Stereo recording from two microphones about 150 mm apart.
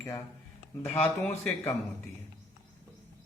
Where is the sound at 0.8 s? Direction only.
10° left (ahead or behind).